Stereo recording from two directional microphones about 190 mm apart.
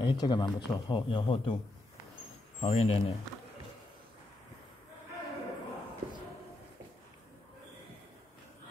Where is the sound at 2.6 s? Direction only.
30° left (ahead or behind).